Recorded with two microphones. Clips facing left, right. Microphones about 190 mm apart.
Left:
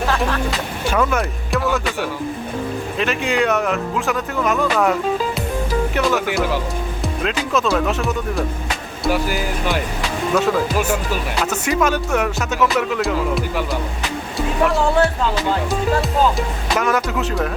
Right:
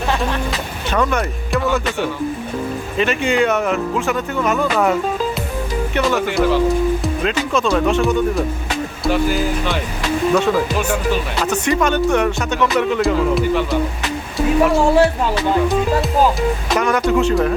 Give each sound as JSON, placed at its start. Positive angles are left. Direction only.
{"t": 0.9, "sound": "speech", "side_deg": 5}
{"t": 6.0, "sound": "speech", "side_deg": 0}
{"t": 14.3, "sound": "music", "side_deg": 0}
{"t": 14.9, "sound": "speech", "side_deg": -20}
{"t": 16.7, "sound": "speech", "side_deg": 0}